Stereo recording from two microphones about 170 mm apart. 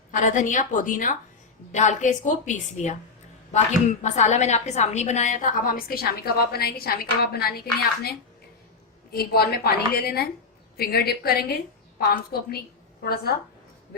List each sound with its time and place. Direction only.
0.1 s a woman's voice: 45° left (ahead or behind); by 7.6 s 65° left (ahead or behind)
9.1 s a woman's voice: 65° left (ahead or behind)